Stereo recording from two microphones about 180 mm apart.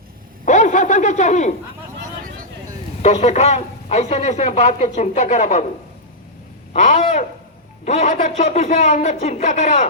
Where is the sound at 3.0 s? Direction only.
40° left (ahead or behind).